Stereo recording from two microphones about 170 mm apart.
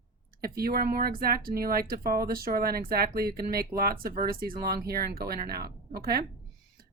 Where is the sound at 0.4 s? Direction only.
60° right (ahead or behind).